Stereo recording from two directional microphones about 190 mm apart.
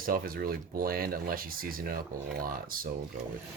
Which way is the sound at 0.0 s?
50° right (ahead or behind).